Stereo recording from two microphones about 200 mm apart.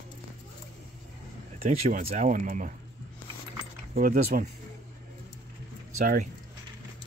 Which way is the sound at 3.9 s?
45° right (ahead or behind).